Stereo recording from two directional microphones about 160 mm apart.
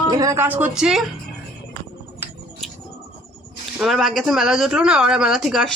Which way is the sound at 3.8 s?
Centre (ahead or behind).